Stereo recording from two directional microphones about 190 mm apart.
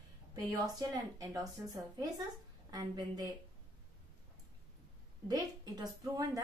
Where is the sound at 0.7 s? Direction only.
20° right (ahead or behind).